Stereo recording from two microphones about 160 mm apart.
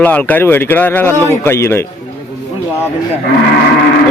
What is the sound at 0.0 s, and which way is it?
A man's voice, 10° left (ahead or behind).